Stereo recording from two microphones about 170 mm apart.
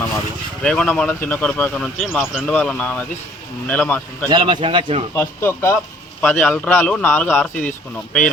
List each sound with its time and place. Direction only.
0.6 s speech: 5° left (ahead or behind)
4.3 s a man's voice: 25° right (ahead or behind)
5.1 s speech: 15° left (ahead or behind)